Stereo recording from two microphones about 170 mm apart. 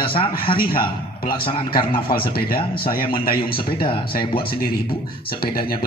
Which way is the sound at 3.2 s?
60° left (ahead or behind).